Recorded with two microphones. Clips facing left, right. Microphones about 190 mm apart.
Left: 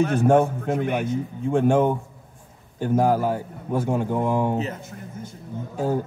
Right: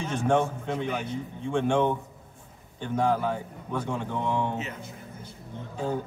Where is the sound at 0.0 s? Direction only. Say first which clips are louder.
Left 7 dB; 60° left (ahead or behind); by 4.7 s 40° left (ahead or behind).